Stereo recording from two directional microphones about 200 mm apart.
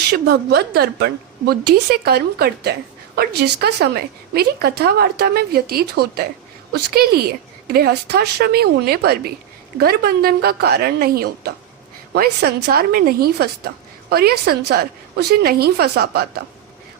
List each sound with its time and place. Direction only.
0.1 s a woman's voice: 55° right (ahead or behind)